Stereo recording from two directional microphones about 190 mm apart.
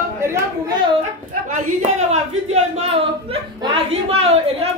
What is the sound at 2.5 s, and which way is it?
Speech, 35° right (ahead or behind).